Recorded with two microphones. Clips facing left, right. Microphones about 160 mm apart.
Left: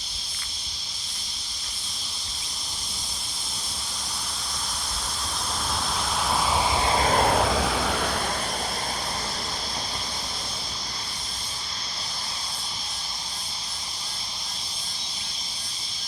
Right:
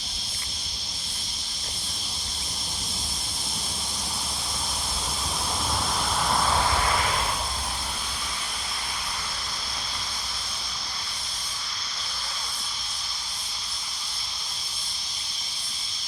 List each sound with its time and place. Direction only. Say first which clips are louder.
6.3 s vehicle: left 1 dB; 5° left (ahead or behind)
6.8 s vehicle: left 3 dB; 30° left (ahead or behind)
7.1 s vehicle: left 9 dB; 55° left (ahead or behind); by 8.2 s 70° left (ahead or behind)